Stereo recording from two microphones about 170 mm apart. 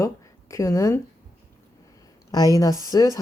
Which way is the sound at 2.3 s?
20° left (ahead or behind).